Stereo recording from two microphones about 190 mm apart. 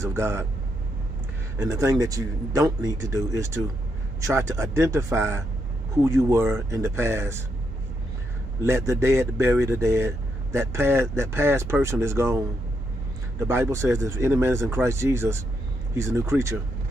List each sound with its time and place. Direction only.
0.0 s speech: 15° right (ahead or behind)
1.6 s speech: 15° right (ahead or behind)
8.6 s speech: 15° right (ahead or behind)